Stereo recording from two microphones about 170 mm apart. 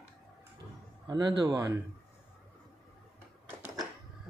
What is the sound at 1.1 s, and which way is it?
Speech, 25° right (ahead or behind).